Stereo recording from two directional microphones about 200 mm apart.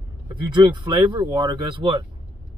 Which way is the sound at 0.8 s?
20° right (ahead or behind).